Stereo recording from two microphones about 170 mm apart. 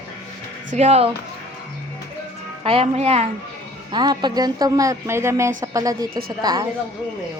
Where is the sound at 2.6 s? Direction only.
35° right (ahead or behind).